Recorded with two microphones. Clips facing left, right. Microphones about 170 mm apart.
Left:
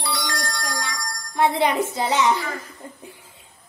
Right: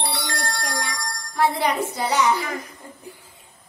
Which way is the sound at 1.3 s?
20° left (ahead or behind).